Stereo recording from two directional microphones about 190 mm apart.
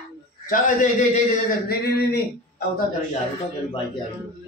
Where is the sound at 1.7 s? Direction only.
55° left (ahead or behind).